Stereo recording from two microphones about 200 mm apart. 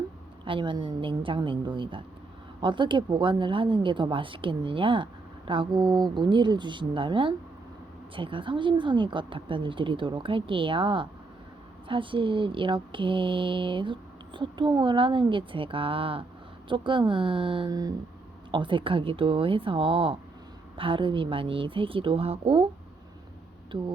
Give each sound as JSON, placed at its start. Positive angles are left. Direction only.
{"t": 0.4, "sound": "speech", "side_deg": -25}